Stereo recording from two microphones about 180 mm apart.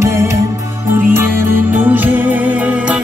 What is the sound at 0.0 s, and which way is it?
Music, 15° right (ahead or behind).